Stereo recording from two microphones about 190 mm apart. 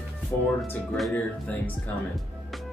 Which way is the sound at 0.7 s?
5° left (ahead or behind).